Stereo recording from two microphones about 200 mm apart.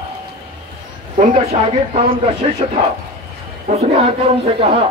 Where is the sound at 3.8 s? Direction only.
30° right (ahead or behind).